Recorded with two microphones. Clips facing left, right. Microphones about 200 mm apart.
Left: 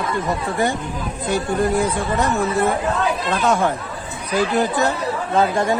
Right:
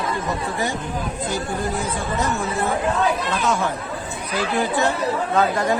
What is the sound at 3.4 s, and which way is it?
Speech, 55° left (ahead or behind).